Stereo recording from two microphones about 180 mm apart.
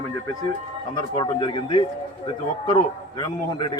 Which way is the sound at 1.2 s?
25° left (ahead or behind).